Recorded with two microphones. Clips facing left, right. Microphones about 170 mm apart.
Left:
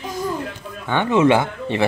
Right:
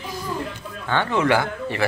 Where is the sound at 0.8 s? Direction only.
20° left (ahead or behind).